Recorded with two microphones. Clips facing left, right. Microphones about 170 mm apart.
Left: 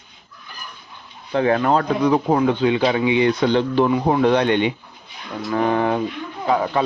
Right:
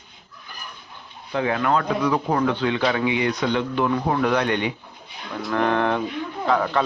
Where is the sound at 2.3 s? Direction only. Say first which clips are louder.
Left 4 dB; 15° left (ahead or behind).